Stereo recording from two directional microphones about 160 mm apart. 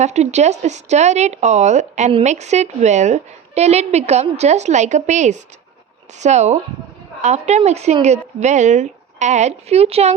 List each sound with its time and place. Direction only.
0.0 s speech: 45° right (ahead or behind)